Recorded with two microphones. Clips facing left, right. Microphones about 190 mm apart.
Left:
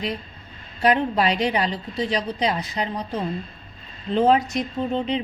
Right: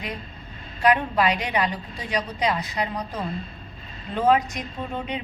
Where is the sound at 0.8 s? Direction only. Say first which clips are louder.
Left 1 dB; 30° left (ahead or behind).